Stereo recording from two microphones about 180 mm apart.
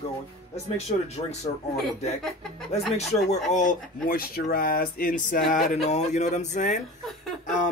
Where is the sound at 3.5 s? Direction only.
45° left (ahead or behind).